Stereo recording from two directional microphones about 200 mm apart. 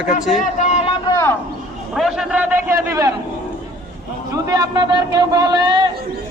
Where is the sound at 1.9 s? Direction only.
Centre (ahead or behind).